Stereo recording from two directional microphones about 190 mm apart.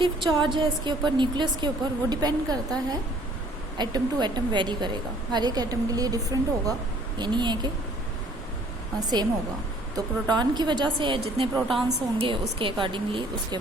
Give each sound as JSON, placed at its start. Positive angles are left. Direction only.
{"t": 0.0, "sound": "a woman's voice", "side_deg": -25}
{"t": 3.8, "sound": "a woman's voice", "side_deg": -20}
{"t": 9.0, "sound": "a woman's voice", "side_deg": -20}
{"t": 11.5, "sound": "a woman's voice", "side_deg": 0}
{"t": 12.2, "sound": "a woman's voice", "side_deg": -25}